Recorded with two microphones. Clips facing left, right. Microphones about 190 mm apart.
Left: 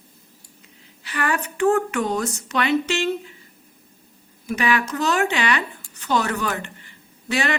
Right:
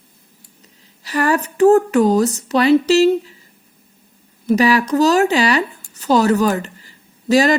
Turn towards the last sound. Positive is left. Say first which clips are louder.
# right 10 dB
turn(degrees=-35)  # may be behind; listen again after turning